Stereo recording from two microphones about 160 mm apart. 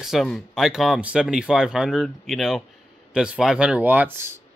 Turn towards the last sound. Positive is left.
turn(degrees=-15)  # may be behind; listen again after turning